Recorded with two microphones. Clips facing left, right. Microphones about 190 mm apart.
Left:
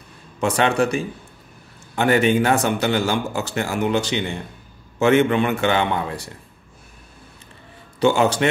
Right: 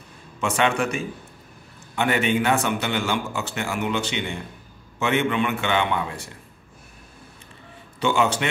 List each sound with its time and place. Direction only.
0.4 s a man's voice: 40° left (ahead or behind)
8.0 s a man's voice: 40° left (ahead or behind)